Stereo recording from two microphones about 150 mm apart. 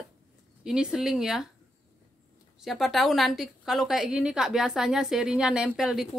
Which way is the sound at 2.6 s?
Centre (ahead or behind).